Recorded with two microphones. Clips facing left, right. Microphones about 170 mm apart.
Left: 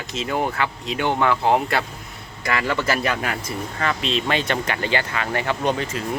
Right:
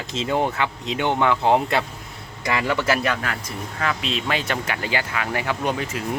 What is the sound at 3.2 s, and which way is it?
Speech, 15° left (ahead or behind).